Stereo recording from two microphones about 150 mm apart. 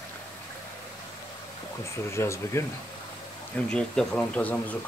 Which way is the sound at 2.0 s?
20° left (ahead or behind).